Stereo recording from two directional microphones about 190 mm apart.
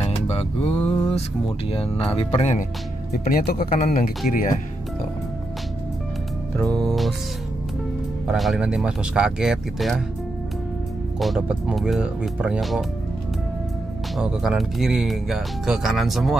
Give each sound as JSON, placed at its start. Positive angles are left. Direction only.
{"t": 0.1, "sound": "speech", "side_deg": 30}
{"t": 3.3, "sound": "speech", "side_deg": 50}
{"t": 6.9, "sound": "music", "side_deg": 0}
{"t": 8.3, "sound": "speech", "side_deg": 0}
{"t": 11.1, "sound": "speech", "side_deg": 0}
{"t": 14.1, "sound": "speech", "side_deg": 0}